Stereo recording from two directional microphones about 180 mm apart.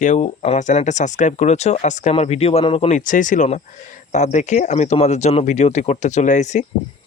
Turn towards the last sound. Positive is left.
turn(degrees=40)  # may be behind; listen again after turning